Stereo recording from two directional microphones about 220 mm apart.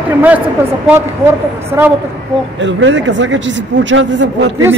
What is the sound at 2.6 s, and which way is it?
Speech, 55° right (ahead or behind).